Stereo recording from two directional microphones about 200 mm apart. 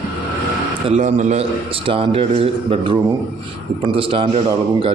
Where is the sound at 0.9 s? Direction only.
35° right (ahead or behind).